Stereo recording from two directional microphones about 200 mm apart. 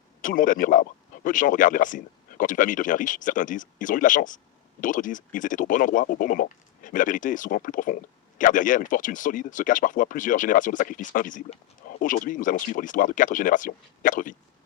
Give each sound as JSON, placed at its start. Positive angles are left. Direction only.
{"t": 0.2, "sound": "speech", "side_deg": 40}